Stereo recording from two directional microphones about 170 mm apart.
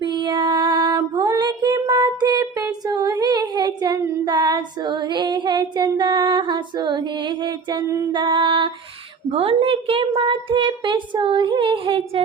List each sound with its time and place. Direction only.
0.0 s female singing: 25° right (ahead or behind)
9.3 s a woman's voice: 35° right (ahead or behind)